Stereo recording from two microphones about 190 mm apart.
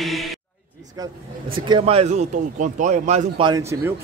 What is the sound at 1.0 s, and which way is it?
A man's voice, 25° right (ahead or behind).